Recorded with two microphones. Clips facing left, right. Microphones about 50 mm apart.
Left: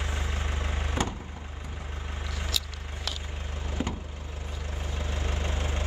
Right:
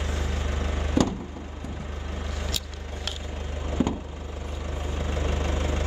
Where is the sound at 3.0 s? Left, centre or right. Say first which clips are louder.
Right 1 dB; right.